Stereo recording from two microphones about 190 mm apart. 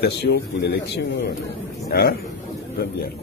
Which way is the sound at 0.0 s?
60° left (ahead or behind).